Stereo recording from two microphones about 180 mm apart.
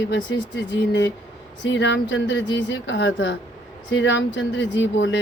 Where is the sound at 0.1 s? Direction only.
85° left.